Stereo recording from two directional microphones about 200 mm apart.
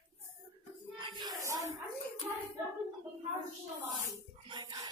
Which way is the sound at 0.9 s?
25° right (ahead or behind).